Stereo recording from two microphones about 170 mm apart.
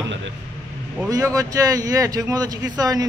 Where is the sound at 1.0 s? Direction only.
20° right (ahead or behind).